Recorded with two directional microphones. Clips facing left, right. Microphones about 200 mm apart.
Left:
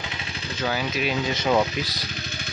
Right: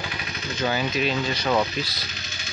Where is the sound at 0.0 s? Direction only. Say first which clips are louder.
Right 2 dB; 25° left (ahead or behind).